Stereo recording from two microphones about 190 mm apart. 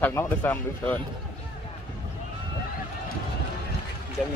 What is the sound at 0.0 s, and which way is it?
Speech, 10° left (ahead or behind).